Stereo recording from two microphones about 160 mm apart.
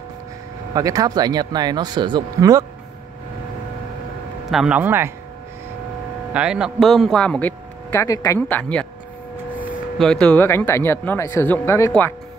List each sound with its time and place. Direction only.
0.7 s speech: 20° right (ahead or behind)
4.5 s speech: 5° right (ahead or behind)
6.3 s speech: 5° right (ahead or behind)
9.9 s speech: 5° left (ahead or behind)